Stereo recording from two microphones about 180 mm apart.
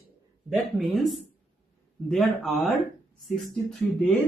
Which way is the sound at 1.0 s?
Centre (ahead or behind).